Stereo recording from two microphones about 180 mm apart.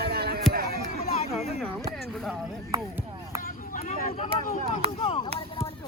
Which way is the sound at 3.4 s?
50° left (ahead or behind).